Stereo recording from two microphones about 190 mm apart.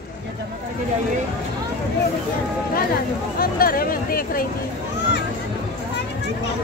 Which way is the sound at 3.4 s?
50° left (ahead or behind).